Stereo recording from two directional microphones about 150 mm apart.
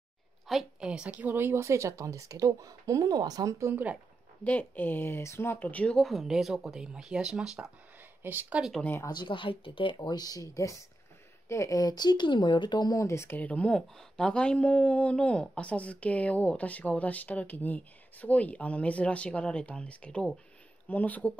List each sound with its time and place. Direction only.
0.5 s a woman's voice: 5° right (ahead or behind)
4.5 s speech: 10° left (ahead or behind); by 8.8 s 5° right (ahead or behind)
8.8 s speech: 15° left (ahead or behind)
9.1 s speech: 30° left (ahead or behind); by 21.3 s 10° left (ahead or behind)